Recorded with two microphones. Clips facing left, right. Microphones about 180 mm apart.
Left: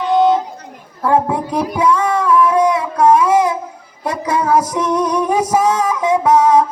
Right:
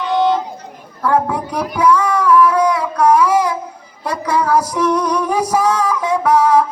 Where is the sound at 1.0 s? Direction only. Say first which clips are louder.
Left 1 dB; 25° left (ahead or behind).